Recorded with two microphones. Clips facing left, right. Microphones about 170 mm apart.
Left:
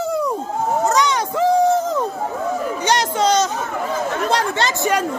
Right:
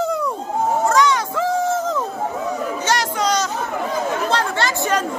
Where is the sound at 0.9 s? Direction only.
20° left (ahead or behind).